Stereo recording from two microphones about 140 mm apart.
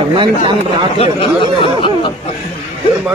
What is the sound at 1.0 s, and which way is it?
Speech, 40° left (ahead or behind).